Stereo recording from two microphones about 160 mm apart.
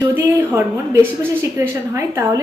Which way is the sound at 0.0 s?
20° right (ahead or behind).